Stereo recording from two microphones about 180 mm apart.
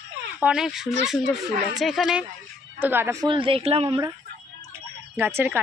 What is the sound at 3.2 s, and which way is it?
Speech, 30° right (ahead or behind).